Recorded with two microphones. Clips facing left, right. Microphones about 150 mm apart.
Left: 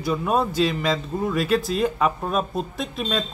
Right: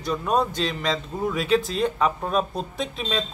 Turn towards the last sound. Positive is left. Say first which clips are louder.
# left 1 dB
turn(degrees=0)  # may be behind; listen again after turning